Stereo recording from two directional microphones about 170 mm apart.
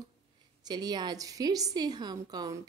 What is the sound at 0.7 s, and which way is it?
A woman's voice, 25° right (ahead or behind).